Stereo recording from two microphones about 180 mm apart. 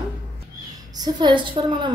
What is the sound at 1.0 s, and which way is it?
Speech, 25° right (ahead or behind).